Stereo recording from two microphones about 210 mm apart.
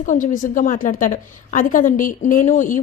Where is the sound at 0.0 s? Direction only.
40° left (ahead or behind).